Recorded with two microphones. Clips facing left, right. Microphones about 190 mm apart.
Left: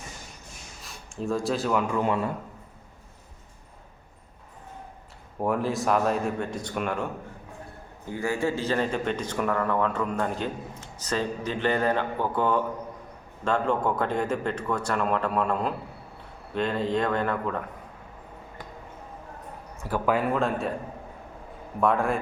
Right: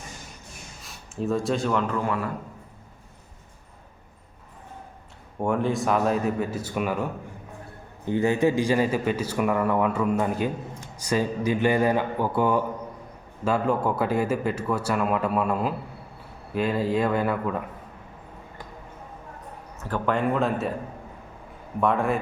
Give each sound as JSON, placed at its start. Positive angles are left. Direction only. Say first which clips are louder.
{"t": 0.9, "sound": "speech", "louder": "right 2 dB", "side_deg": 0}
{"t": 1.9, "sound": "a man's voice", "louder": "left 1 dB", "side_deg": 20}
{"t": 5.4, "sound": "speech", "louder": "right 2 dB", "side_deg": 0}
{"t": 8.0, "sound": "a man's voice", "louder": "right 6 dB", "side_deg": -20}
{"t": 19.8, "sound": "speech", "louder": "even", "side_deg": 10}
{"t": 21.8, "sound": "speech", "louder": "right 1 dB", "side_deg": 0}